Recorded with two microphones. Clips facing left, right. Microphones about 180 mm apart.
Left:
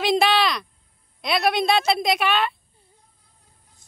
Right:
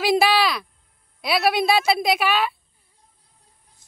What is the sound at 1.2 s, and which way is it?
A woman's voice, 5° right (ahead or behind).